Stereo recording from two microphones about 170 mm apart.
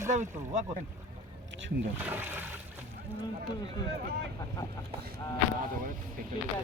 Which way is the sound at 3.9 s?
70° right (ahead or behind).